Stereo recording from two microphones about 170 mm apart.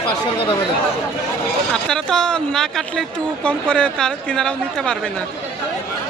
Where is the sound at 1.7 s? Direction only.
5° left (ahead or behind).